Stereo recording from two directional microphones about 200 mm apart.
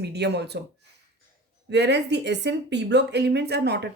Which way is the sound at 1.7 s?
60° right (ahead or behind).